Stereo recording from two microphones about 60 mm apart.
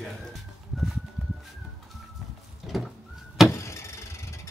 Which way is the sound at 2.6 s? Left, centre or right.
Centre.